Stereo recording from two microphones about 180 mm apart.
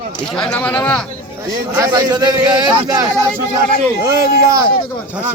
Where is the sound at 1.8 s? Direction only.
20° right (ahead or behind).